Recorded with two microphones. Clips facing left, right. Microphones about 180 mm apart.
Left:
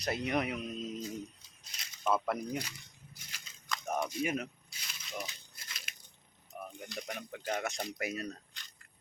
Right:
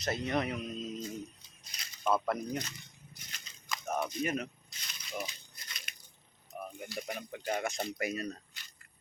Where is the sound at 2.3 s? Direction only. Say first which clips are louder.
Right 1 dB; 10° left (ahead or behind).